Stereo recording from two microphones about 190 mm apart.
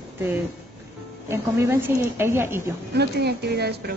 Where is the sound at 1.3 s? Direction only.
15° right (ahead or behind).